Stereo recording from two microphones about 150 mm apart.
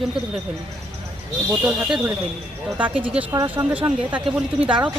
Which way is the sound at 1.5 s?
10° right (ahead or behind).